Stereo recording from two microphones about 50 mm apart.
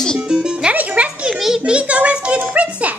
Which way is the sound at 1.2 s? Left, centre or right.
Centre.